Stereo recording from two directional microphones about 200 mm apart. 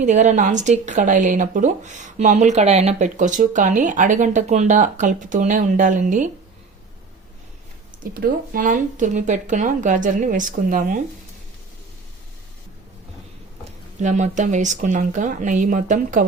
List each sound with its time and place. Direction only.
0.0 s speech: 40° right (ahead or behind)
8.2 s speech: 45° right (ahead or behind)
14.0 s speech: 35° right (ahead or behind)